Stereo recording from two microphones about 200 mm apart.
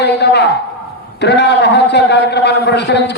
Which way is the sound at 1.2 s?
60° left (ahead or behind).